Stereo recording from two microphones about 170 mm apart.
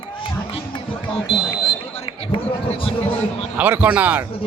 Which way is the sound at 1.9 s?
35° left (ahead or behind).